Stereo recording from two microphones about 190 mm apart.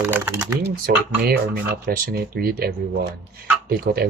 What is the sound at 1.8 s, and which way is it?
Speech, 55° right (ahead or behind).